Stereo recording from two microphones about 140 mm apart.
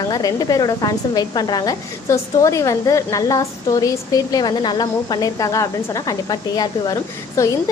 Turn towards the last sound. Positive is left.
turn(degrees=25)  # may be behind; listen again after turning